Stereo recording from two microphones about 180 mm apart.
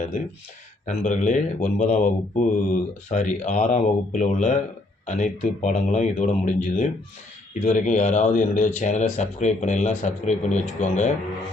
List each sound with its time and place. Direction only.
0.9 s a man's voice: 45° left (ahead or behind)